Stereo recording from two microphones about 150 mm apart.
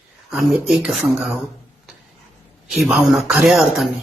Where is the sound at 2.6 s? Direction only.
Centre (ahead or behind).